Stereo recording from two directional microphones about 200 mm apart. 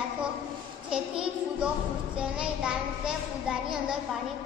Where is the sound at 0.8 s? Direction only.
5° right (ahead or behind).